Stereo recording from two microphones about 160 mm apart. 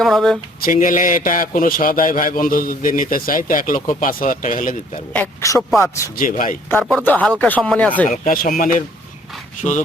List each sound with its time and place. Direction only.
0.0 s speech: centre (ahead or behind)
0.6 s a man's voice: 60° left (ahead or behind)
5.1 s speech: 10° left (ahead or behind)
6.1 s a man's voice: 60° left (ahead or behind)
6.9 s speech: 10° left (ahead or behind)
8.0 s a man's voice: 50° left (ahead or behind)
9.6 s speech: 50° left (ahead or behind)